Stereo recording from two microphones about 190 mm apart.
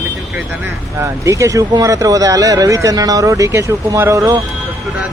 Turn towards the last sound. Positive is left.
turn(degrees=-15)  # may be behind; listen again after turning